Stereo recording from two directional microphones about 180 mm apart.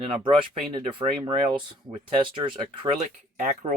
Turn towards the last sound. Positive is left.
turn(degrees=-50)  # may be behind; listen again after turning